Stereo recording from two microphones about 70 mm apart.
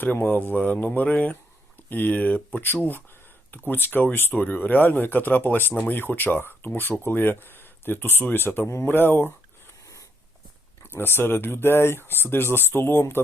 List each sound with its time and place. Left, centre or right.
0.0 s speech: left
10.8 s speech: left